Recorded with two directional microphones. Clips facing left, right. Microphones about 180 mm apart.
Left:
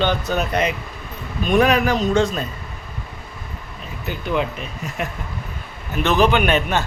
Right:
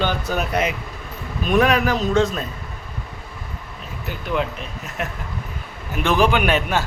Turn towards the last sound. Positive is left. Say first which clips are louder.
# left 1 dB
turn(degrees=-5)  # may be behind; listen again after turning